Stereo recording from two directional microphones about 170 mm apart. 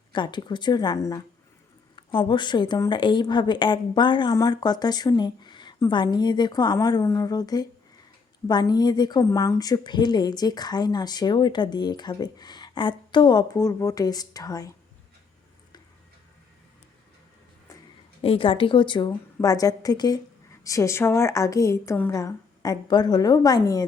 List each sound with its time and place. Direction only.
0.1 s a woman's voice: 25° left (ahead or behind)
18.2 s a woman's voice: 30° left (ahead or behind)